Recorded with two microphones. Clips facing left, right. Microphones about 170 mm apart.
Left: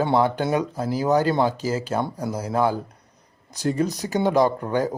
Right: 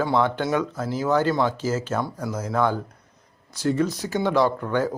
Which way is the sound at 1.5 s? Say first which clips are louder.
Even; 15° left (ahead or behind).